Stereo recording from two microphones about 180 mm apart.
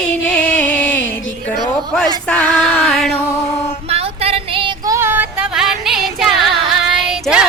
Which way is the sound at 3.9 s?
35° right (ahead or behind).